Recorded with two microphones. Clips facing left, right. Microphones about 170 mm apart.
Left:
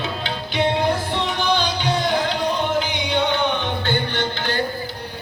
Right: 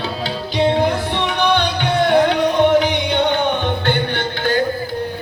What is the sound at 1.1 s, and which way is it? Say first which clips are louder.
Music: right 4 dB; 65° right (ahead or behind).